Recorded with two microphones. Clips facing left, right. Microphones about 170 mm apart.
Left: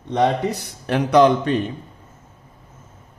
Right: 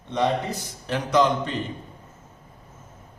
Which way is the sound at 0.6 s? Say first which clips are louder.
Left 7 dB; 60° left (ahead or behind).